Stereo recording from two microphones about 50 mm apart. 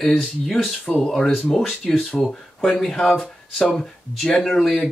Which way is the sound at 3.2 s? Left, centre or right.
Left.